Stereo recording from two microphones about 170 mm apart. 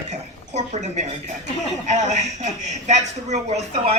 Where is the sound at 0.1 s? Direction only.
40° right (ahead or behind).